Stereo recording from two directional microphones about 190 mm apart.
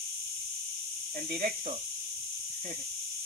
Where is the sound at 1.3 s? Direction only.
40° right (ahead or behind).